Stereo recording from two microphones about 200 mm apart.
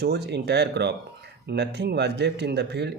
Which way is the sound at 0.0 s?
55° right (ahead or behind).